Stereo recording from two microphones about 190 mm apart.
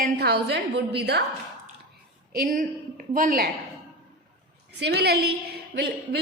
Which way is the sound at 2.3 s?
50° right (ahead or behind).